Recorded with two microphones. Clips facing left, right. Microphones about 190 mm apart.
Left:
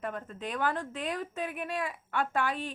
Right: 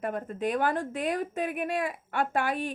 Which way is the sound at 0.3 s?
10° right (ahead or behind).